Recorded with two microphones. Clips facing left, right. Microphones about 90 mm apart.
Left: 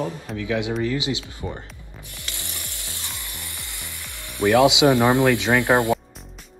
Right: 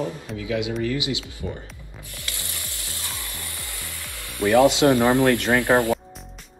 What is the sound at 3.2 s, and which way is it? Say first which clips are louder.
Sizzle: right 1 dB; 20° left (ahead or behind).